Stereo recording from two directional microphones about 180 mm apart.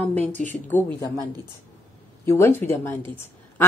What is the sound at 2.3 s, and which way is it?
Speech, 15° left (ahead or behind).